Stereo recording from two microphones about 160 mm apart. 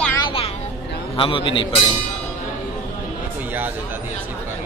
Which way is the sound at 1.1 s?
35° left (ahead or behind).